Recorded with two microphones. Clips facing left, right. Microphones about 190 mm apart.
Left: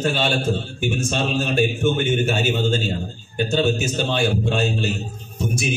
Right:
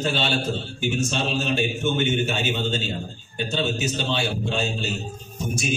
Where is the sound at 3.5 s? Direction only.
50° left (ahead or behind).